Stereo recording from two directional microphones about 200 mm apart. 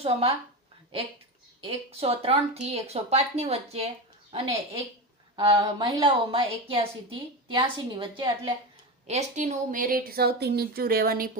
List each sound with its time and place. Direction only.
0.0 s speech: 30° right (ahead or behind)
1.6 s a woman's voice: 30° right (ahead or behind)
9.0 s a woman's voice: 35° right (ahead or behind)